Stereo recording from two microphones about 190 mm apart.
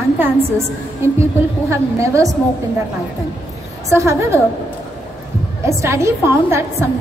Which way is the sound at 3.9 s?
15° right (ahead or behind).